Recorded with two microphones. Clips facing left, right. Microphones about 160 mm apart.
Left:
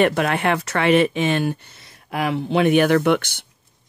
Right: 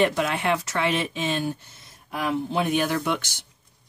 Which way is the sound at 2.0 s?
80° left.